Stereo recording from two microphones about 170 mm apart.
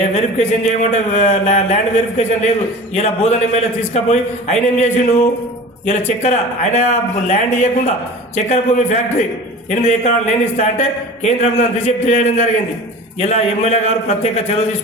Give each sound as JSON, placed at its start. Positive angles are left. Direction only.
{"t": 0.0, "sound": "a man's voice", "side_deg": 40}